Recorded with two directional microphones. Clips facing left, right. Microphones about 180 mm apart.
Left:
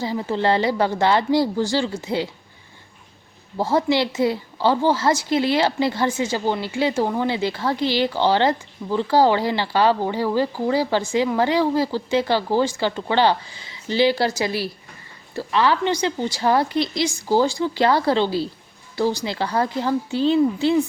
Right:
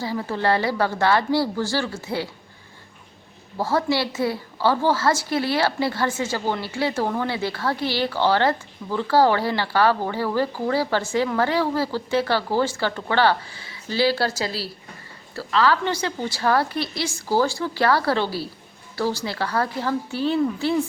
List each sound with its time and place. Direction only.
0.0 s a woman's voice: 20° left (ahead or behind)
3.6 s a woman's voice: 20° left (ahead or behind)